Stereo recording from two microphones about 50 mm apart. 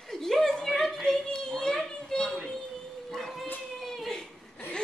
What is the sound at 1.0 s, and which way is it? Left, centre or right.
A child's voice, centre.